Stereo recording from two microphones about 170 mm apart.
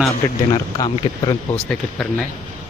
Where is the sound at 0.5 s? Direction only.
25° left (ahead or behind).